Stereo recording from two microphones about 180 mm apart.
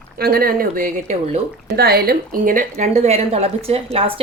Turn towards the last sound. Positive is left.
turn(degrees=-35)  # may be behind; listen again after turning